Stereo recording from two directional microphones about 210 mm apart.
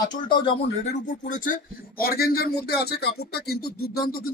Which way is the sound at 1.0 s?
40° left (ahead or behind).